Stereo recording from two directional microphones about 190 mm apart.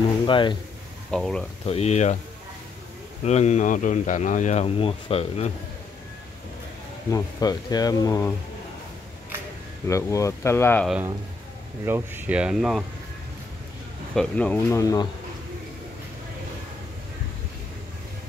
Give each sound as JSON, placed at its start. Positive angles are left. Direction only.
{"t": 0.3, "sound": "speech", "side_deg": 25}
{"t": 1.1, "sound": "speech", "side_deg": 5}
{"t": 1.7, "sound": "speech", "side_deg": 35}
{"t": 3.3, "sound": "speech", "side_deg": 35}
{"t": 7.1, "sound": "speech", "side_deg": 20}
{"t": 9.8, "sound": "speech", "side_deg": 15}
{"t": 10.9, "sound": "speech", "side_deg": -10}
{"t": 14.1, "sound": "speech", "side_deg": 5}